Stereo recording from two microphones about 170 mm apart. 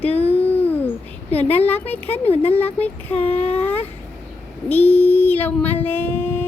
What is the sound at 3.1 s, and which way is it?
Speech, 35° left (ahead or behind).